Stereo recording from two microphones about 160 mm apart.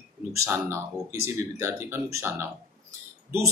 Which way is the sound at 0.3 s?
20° right (ahead or behind).